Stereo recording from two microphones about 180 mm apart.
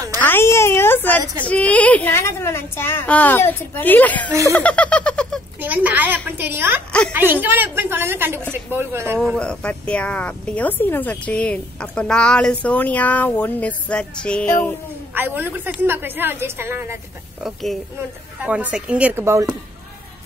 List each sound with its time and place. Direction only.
0.2 s speech: 10° left (ahead or behind)
1.2 s a woman's voice: 15° right (ahead or behind)
1.5 s speech: 10° left (ahead or behind)
5.6 s a woman's voice: 10° right (ahead or behind)
9.2 s speech: 5° left (ahead or behind)
15.1 s a woman's voice: 10° right (ahead or behind)
17.4 s a woman's voice: centre (ahead or behind)